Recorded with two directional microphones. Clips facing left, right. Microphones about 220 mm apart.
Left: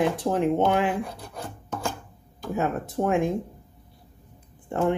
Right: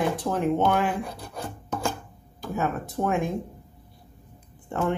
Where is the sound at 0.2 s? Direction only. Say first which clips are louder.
Left 1 dB; 25° left (ahead or behind).